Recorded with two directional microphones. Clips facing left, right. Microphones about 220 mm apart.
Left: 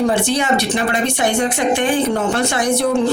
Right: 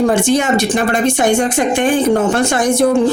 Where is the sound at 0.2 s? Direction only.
45° right (ahead or behind).